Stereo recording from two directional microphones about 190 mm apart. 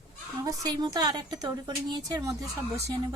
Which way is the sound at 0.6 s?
20° right (ahead or behind).